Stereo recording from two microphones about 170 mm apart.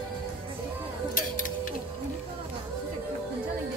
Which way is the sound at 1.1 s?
50° left (ahead or behind).